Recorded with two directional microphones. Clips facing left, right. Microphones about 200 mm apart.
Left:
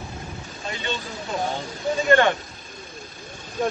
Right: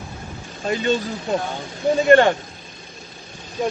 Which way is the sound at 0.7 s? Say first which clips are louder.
Right 10 dB; 40° right (ahead or behind).